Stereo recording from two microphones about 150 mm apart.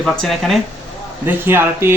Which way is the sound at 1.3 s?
15° right (ahead or behind).